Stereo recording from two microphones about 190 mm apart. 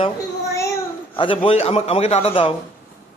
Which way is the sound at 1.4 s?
30° left (ahead or behind).